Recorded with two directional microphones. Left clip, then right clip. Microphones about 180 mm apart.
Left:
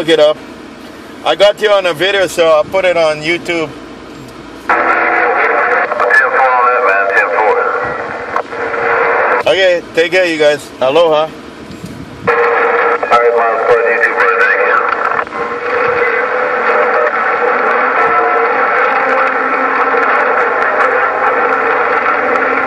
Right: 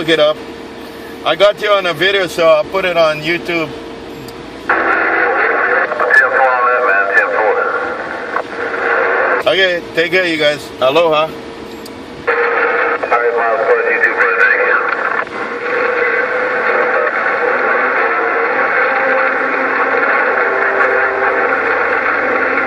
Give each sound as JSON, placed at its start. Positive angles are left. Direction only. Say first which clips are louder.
{"t": 0.0, "sound": "speech", "louder": "left 3 dB", "side_deg": 30}
{"t": 4.6, "sound": "radio", "louder": "left 2 dB", "side_deg": 35}
{"t": 10.9, "sound": "speech", "louder": "left 2 dB", "side_deg": 20}
{"t": 12.3, "sound": "radio", "louder": "left 3 dB", "side_deg": 40}